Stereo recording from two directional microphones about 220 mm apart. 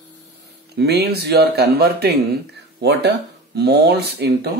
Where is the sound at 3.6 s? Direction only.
50° right (ahead or behind).